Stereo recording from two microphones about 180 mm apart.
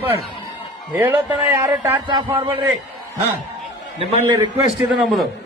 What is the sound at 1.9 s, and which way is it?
Speech, 25° right (ahead or behind).